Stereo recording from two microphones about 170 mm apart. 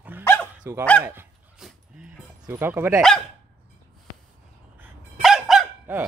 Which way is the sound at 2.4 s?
10° right (ahead or behind).